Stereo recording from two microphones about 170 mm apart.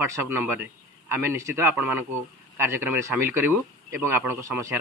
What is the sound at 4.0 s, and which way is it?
Speech, 15° right (ahead or behind).